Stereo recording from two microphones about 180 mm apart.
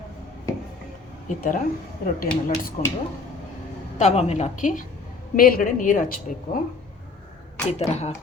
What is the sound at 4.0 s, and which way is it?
A woman's voice, 40° left (ahead or behind).